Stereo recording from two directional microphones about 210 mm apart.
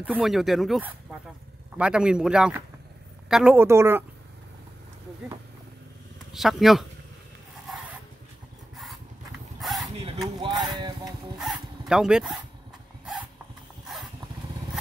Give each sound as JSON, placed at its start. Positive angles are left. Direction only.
{"t": 0.0, "sound": "a woman's voice", "side_deg": -5}
{"t": 6.3, "sound": "speech", "side_deg": 0}
{"t": 9.6, "sound": "a sound", "side_deg": 0}
{"t": 10.2, "sound": "a sound", "side_deg": -20}
{"t": 11.3, "sound": "dog", "side_deg": 0}
{"t": 13.9, "sound": "vehicle", "side_deg": 0}